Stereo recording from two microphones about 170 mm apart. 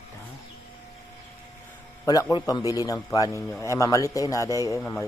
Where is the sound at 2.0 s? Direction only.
20° left (ahead or behind).